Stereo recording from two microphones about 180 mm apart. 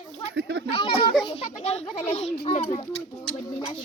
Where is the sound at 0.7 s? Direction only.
30° left (ahead or behind).